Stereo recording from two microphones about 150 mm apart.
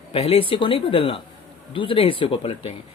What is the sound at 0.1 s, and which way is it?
Speech, 40° left (ahead or behind).